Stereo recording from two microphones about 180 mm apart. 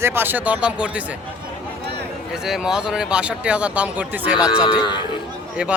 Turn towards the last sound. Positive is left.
turn(degrees=25)  # may be behind; listen again after turning